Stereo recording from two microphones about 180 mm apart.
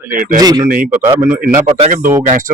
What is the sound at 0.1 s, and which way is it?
Speech, 50° right (ahead or behind).